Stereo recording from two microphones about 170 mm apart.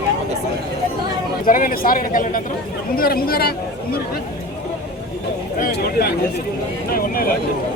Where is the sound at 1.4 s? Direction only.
55° left (ahead or behind).